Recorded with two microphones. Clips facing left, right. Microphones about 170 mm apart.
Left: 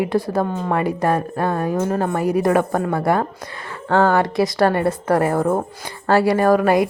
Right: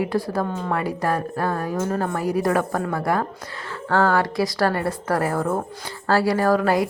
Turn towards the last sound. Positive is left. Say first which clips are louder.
# left 4 dB
turn(degrees=20)  # may be behind; listen again after turning